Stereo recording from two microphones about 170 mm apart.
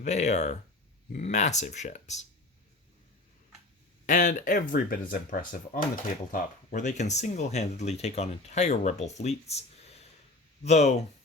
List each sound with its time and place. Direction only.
0.0 s speech: 40° left (ahead or behind)
4.0 s speech: 45° left (ahead or behind)
4.5 s speech: 60° left (ahead or behind); by 11.0 s 40° left (ahead or behind)